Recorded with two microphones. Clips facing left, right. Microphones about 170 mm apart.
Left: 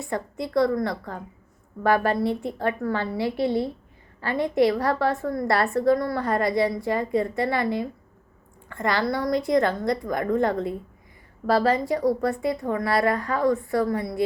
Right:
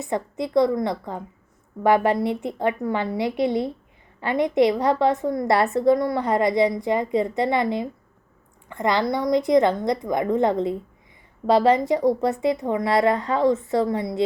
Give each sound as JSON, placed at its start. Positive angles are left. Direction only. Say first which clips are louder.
{"t": 0.0, "sound": "a woman's voice", "louder": "right 3 dB", "side_deg": -20}